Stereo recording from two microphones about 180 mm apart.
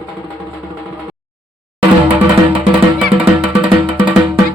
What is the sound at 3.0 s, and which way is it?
Music, 5° right (ahead or behind).